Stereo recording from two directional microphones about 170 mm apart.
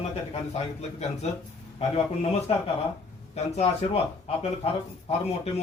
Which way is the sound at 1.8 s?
35° left (ahead or behind).